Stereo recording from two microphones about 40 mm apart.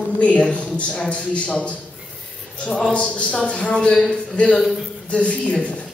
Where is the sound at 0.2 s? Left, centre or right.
Left.